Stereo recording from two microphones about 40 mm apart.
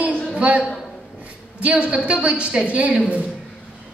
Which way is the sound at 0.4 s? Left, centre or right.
Right.